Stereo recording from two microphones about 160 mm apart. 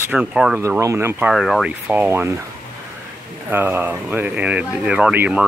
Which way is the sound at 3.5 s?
15° right (ahead or behind).